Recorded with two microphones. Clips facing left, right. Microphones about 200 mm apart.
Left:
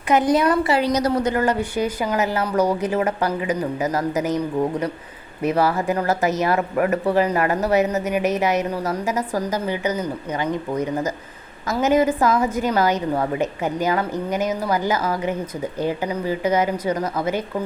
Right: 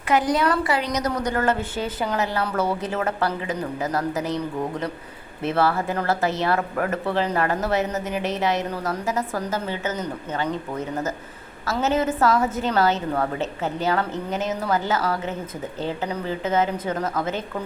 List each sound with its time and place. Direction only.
0.1 s a woman's voice: 20° left (ahead or behind)
5.4 s a woman's voice: 15° left (ahead or behind)
7.9 s speech: centre (ahead or behind)
8.3 s a woman's voice: 20° left (ahead or behind)